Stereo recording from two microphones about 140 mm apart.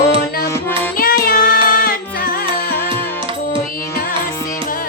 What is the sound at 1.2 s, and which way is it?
Music, 90° left.